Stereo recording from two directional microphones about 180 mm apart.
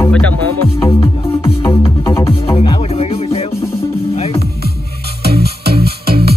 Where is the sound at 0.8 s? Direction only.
25° left (ahead or behind).